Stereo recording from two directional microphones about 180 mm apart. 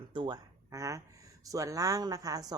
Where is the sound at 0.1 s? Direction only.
25° right (ahead or behind).